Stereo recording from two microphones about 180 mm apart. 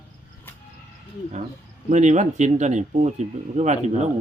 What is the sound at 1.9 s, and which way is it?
A man's voice, 40° right (ahead or behind).